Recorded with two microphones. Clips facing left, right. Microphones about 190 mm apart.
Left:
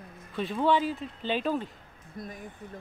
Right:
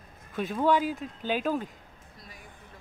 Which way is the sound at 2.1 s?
50° left (ahead or behind).